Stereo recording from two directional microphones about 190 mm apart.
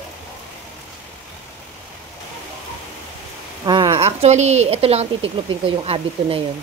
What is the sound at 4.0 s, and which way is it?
Speech, 35° right (ahead or behind).